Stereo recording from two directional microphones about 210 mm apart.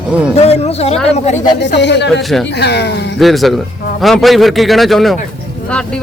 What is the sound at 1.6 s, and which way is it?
Speech, 55° left (ahead or behind).